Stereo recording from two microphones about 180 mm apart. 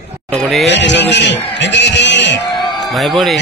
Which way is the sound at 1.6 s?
75° left (ahead or behind).